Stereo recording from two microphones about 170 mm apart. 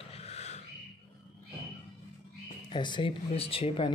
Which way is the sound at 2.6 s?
25° left (ahead or behind).